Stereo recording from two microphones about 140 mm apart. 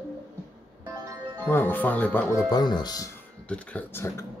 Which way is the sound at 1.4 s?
15° left (ahead or behind).